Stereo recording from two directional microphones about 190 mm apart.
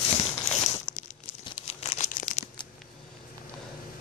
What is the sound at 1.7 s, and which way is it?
Crumpling, 35° left (ahead or behind).